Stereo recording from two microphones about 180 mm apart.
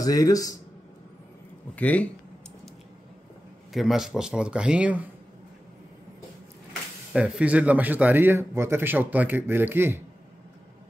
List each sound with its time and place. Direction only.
0.0 s speech: 20° left (ahead or behind)
1.8 s speech: 10° left (ahead or behind)
3.7 s speech: centre (ahead or behind)
7.1 s speech: 5° right (ahead or behind)